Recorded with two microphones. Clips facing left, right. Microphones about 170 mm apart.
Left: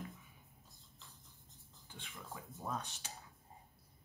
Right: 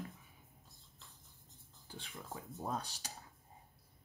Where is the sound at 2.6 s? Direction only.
35° right (ahead or behind).